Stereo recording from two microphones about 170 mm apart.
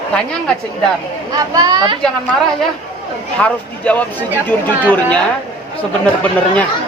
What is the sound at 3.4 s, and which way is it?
Speech, 10° left (ahead or behind).